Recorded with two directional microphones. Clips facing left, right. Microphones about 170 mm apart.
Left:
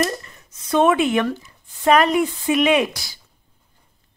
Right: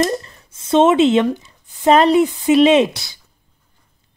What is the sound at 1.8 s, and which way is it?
Speech, 25° right (ahead or behind).